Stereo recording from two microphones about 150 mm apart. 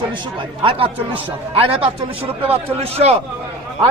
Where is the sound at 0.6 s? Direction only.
35° right (ahead or behind).